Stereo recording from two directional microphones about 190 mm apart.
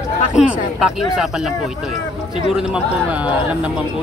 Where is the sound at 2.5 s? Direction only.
5° right (ahead or behind).